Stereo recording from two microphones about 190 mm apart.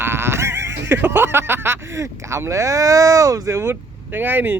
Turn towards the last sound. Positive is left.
turn(degrees=-10)  # may be behind; listen again after turning